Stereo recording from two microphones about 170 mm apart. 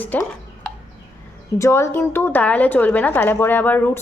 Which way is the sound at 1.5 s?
15° left (ahead or behind).